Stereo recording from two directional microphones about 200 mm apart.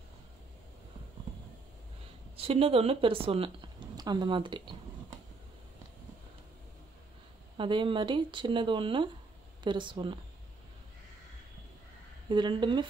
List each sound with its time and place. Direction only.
2.3 s speech: 30° right (ahead or behind)
7.5 s speech: 25° right (ahead or behind)
12.3 s speech: 25° right (ahead or behind)